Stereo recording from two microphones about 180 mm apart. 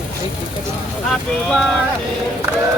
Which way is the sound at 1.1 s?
Centre (ahead or behind).